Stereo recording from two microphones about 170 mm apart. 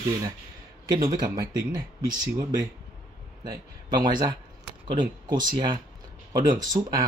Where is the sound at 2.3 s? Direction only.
25° right (ahead or behind).